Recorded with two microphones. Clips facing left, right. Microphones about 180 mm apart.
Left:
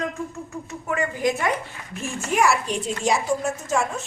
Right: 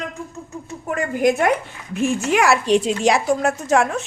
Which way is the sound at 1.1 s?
55° right (ahead or behind).